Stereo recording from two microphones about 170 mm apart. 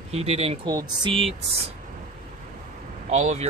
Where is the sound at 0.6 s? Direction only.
25° right (ahead or behind).